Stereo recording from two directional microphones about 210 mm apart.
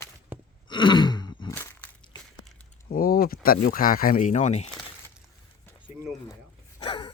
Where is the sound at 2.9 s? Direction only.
45° left (ahead or behind).